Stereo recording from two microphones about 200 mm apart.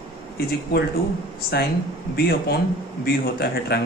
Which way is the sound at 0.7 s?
55° left (ahead or behind).